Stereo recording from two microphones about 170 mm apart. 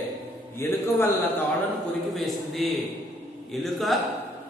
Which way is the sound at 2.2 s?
Centre (ahead or behind).